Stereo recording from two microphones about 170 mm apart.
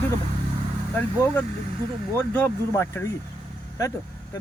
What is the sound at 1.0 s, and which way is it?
Speech, 10° left (ahead or behind).